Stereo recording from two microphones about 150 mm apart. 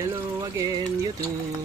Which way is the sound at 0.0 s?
20° right (ahead or behind).